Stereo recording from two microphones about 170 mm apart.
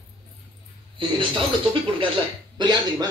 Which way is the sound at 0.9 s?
30° right (ahead or behind).